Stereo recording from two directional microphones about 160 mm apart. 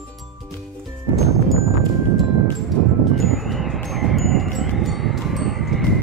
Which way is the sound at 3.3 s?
Centre (ahead or behind).